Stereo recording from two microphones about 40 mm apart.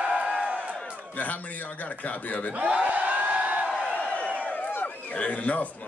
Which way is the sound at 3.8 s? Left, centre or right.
Left.